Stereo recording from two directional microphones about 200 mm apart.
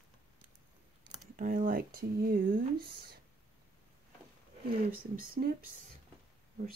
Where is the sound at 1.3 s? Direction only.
40° right (ahead or behind).